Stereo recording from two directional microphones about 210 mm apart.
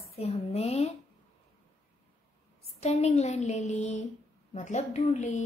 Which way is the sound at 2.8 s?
30° left (ahead or behind).